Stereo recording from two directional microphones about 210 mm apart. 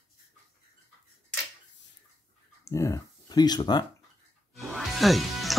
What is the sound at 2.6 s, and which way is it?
Speech, 15° left (ahead or behind).